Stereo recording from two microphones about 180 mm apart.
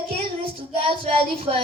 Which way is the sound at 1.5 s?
35° right (ahead or behind).